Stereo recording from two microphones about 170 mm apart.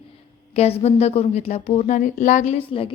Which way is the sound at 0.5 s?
40° left (ahead or behind).